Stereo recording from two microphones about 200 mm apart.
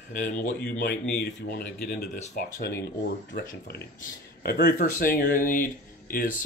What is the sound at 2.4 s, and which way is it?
Speech, 50° left (ahead or behind).